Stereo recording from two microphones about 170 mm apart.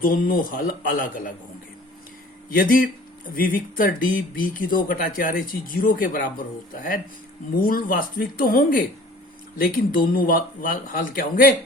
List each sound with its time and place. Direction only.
0.0 s speech: 55° left (ahead or behind)
2.5 s speech: 60° left (ahead or behind)
7.6 s speech: 55° left (ahead or behind)